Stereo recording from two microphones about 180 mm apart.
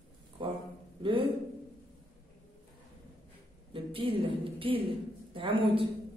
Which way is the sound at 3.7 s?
30° right (ahead or behind).